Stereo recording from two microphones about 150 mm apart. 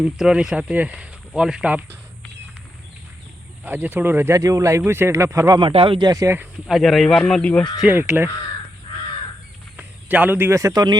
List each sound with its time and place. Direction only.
0.0 s speech: 5° right (ahead or behind)
3.6 s speech: 10° right (ahead or behind)
5.5 s speech: 35° right (ahead or behind)
6.1 s speech: 20° right (ahead or behind)
6.7 s speech: centre (ahead or behind)
7.8 s speech: 10° right (ahead or behind)
9.7 s speech: 10° right (ahead or behind)